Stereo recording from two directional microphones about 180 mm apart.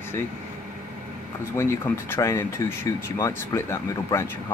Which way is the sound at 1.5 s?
15° left (ahead or behind).